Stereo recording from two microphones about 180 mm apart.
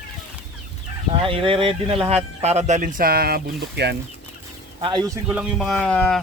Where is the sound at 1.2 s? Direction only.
30° right (ahead or behind); by 4.0 s 65° right (ahead or behind).